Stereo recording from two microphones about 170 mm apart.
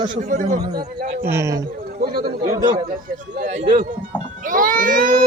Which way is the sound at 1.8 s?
60° right (ahead or behind).